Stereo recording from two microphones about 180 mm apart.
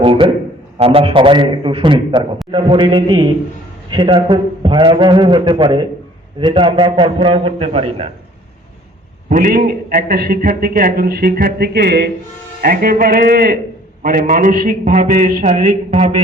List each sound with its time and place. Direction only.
0.0 s a sound: 30° right (ahead or behind)
0.8 s a man's voice: 35° right (ahead or behind)
9.3 s a man's voice: 50° right (ahead or behind); by 16.2 s 35° right (ahead or behind)